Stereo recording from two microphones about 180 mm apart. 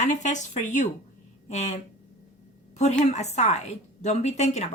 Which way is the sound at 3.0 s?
40° left (ahead or behind).